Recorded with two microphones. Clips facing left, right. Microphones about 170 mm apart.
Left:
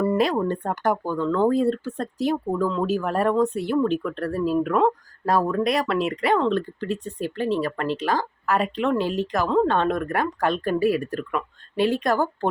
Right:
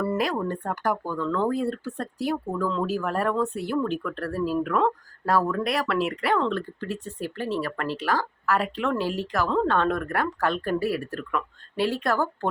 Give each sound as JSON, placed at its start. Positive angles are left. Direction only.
{"t": 0.0, "sound": "speech", "side_deg": 20}